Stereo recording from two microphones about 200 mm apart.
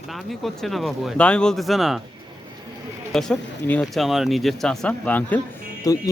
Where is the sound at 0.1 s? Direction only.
Centre (ahead or behind).